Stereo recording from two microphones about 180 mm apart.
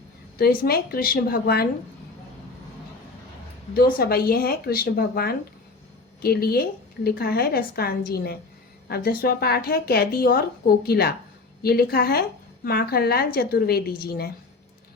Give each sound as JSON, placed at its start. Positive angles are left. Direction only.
{"t": 0.3, "sound": "a woman's voice", "side_deg": 60}
{"t": 3.8, "sound": "a woman's voice", "side_deg": 55}